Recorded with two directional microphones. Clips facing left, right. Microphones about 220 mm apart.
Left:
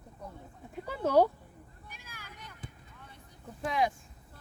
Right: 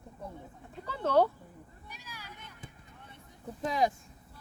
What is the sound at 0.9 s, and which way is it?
Speech, 10° left (ahead or behind).